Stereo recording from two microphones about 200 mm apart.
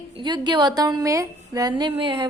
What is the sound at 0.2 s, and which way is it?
A woman's voice, 20° right (ahead or behind).